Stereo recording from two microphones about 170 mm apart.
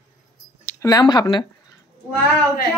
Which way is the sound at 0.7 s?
20° left (ahead or behind).